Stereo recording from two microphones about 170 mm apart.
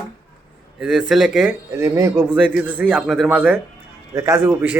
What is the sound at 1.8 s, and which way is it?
Speech, 15° right (ahead or behind).